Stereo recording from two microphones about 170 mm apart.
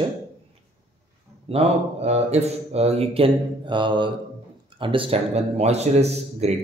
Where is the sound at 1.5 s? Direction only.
35° right (ahead or behind).